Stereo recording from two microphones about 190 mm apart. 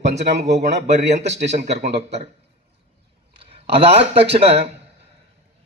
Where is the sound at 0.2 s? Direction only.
65° right (ahead or behind).